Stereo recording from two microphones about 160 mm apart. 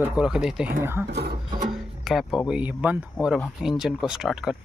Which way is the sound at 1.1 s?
90° right.